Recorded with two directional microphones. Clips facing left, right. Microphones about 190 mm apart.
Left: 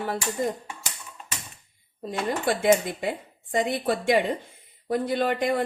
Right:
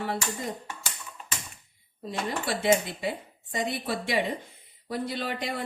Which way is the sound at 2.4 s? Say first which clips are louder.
Left 4 dB; 50° left (ahead or behind).